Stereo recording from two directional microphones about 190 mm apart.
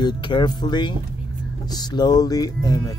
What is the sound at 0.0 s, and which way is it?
Speech, 25° left (ahead or behind).